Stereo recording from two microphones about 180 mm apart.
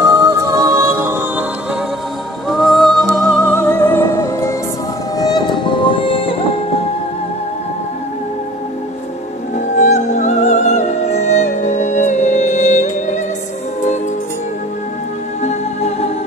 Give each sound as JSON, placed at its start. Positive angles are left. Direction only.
{"t": 0.1, "sound": "music", "side_deg": -15}
{"t": 2.4, "sound": "music", "side_deg": 0}
{"t": 9.8, "sound": "music", "side_deg": 40}